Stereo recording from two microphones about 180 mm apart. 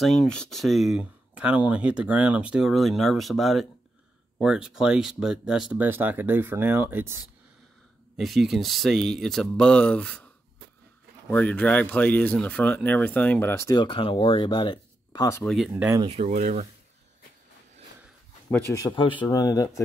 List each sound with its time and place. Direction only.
0.0 s speech: centre (ahead or behind)
8.2 s speech: centre (ahead or behind)
11.2 s speech: 10° left (ahead or behind); by 15.2 s 25° left (ahead or behind)
15.4 s speech: centre (ahead or behind)
16.0 s speech: 35° right (ahead or behind)
16.3 s speech: 50° right (ahead or behind)
18.5 s speech: 15° left (ahead or behind)
18.9 s speech: 30° left (ahead or behind)